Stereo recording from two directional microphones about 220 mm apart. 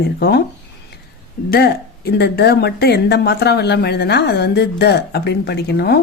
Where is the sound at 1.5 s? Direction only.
45° left (ahead or behind).